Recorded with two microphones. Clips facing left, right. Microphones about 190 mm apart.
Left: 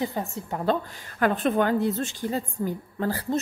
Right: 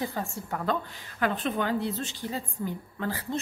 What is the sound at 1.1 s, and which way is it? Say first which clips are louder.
A woman's voice: left 6 dB; 50° left (ahead or behind).